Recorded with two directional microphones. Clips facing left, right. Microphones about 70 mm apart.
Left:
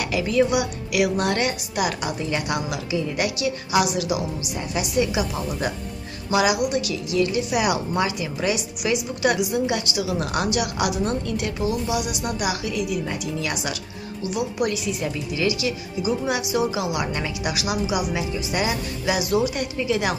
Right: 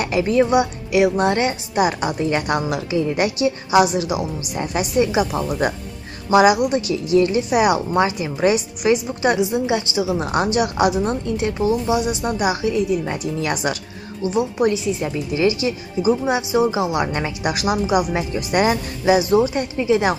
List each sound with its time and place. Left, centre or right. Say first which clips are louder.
0.0 s a woman's voice: right 3 dB; right